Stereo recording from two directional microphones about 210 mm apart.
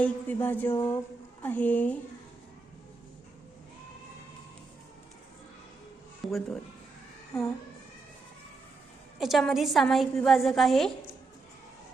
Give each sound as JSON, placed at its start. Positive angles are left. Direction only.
{"t": 0.0, "sound": "a sound", "side_deg": 10}
{"t": 6.2, "sound": "a woman's voice", "side_deg": 0}
{"t": 9.1, "sound": "a woman's voice", "side_deg": 0}